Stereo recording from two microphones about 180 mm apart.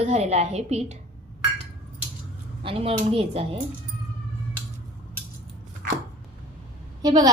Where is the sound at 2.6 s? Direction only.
30° right (ahead or behind).